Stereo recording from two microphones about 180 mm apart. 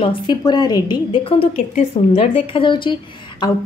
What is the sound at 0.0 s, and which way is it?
A woman's voice, 25° left (ahead or behind).